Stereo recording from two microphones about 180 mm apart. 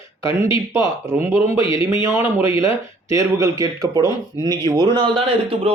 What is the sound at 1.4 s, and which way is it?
Speech, 30° left (ahead or behind).